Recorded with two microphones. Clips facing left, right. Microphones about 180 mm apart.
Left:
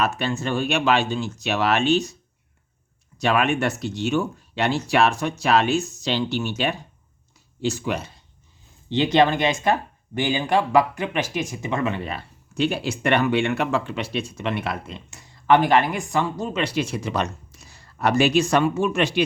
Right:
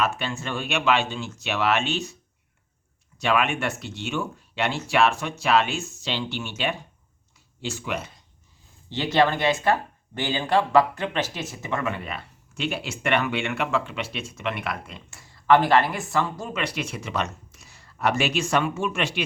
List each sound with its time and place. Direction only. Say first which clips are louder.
0.0 s speech: left 3 dB; 40° left (ahead or behind)
3.2 s speech: left 3 dB; 40° left (ahead or behind)
8.9 s speech: left 3 dB; 20° left (ahead or behind); by 19.2 s 35° left (ahead or behind)